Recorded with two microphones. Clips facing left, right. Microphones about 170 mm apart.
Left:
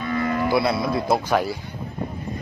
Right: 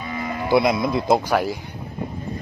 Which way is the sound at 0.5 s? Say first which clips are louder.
Right 6 dB; 20° right (ahead or behind).